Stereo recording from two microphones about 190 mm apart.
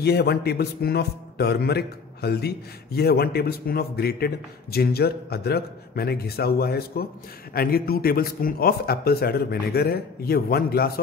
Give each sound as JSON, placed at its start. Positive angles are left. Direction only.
{"t": 0.0, "sound": "a man's voice", "side_deg": 60}